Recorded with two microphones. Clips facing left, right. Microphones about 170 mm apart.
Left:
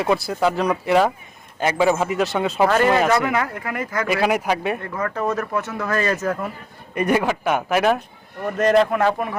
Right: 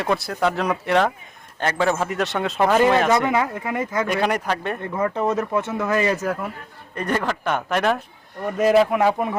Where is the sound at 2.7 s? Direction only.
10° right (ahead or behind).